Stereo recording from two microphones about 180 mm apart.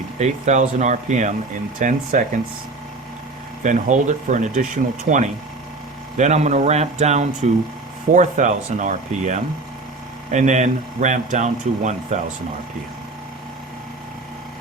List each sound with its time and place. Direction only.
0.2 s speech: 40° right (ahead or behind)
3.6 s speech: 45° right (ahead or behind)